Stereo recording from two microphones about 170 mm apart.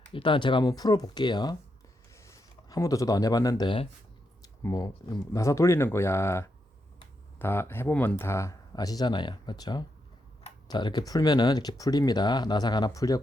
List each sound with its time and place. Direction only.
0.1 s speech: 30° left (ahead or behind)